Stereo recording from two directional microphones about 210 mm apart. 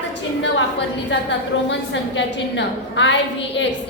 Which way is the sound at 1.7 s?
55° left (ahead or behind).